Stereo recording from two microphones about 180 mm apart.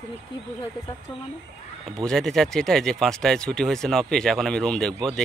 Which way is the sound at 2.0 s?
Centre (ahead or behind).